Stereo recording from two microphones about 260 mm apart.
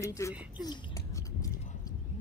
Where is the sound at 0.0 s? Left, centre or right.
Centre.